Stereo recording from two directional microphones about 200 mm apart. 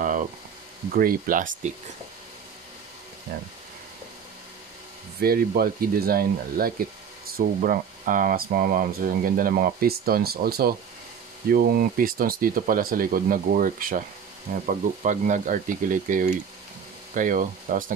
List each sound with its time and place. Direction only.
0.0 s frying: 40° right (ahead or behind)
0.9 s speech: 45° right (ahead or behind)
5.2 s speech: 50° right (ahead or behind)